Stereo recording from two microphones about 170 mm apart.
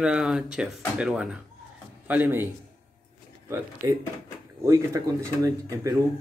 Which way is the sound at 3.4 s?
15° right (ahead or behind).